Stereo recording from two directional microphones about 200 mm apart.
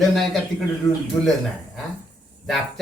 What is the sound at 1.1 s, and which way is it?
Speech, 15° left (ahead or behind).